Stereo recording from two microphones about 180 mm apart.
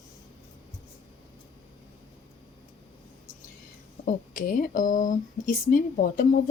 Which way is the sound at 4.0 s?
50° left (ahead or behind).